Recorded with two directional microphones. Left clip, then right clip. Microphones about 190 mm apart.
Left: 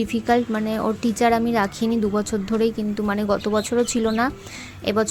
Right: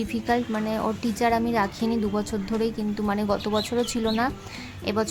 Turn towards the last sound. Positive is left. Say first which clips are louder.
# left 5 dB
turn(degrees=20)  # may be behind; listen again after turning